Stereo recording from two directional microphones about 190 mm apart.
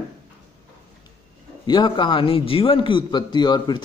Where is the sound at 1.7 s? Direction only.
25° left (ahead or behind).